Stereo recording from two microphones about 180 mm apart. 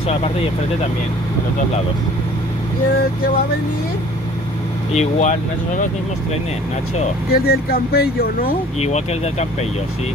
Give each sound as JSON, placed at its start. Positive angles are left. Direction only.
{"t": 4.9, "sound": "speech", "side_deg": 40}
{"t": 7.2, "sound": "speech", "side_deg": 60}
{"t": 8.8, "sound": "speech", "side_deg": 35}